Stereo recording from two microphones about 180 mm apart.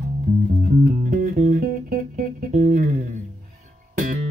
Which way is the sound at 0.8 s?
50° right (ahead or behind).